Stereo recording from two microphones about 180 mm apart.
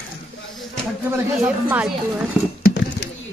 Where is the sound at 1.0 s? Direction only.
10° right (ahead or behind).